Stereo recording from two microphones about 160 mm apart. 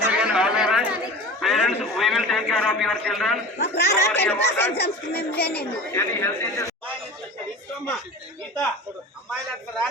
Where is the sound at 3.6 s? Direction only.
90° left.